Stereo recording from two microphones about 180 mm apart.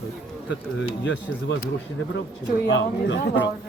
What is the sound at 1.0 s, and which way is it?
Speech, 90° left.